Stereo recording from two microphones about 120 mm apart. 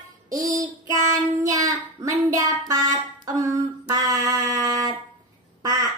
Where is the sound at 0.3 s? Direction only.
30° right (ahead or behind).